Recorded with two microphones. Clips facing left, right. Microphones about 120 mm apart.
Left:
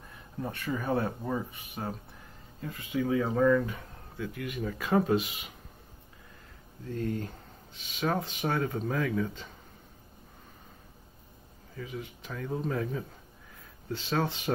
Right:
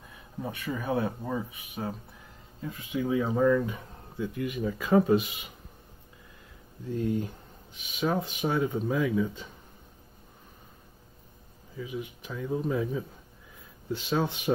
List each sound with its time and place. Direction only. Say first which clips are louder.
0.4 s speech: even; 10° right (ahead or behind)
2.6 s speech: even; 15° right (ahead or behind)
4.2 s speech: right 4 dB; 20° right (ahead or behind)
4.6 s speech: right 4 dB; 5° right (ahead or behind)
6.9 s speech: right 4 dB; 15° right (ahead or behind)
11.7 s speech: right 3 dB; 10° right (ahead or behind)